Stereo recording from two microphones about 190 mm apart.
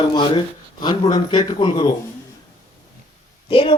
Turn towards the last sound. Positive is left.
turn(degrees=30)  # may be behind; listen again after turning